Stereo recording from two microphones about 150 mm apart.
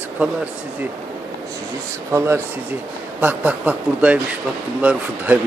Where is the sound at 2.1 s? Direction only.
15° right (ahead or behind).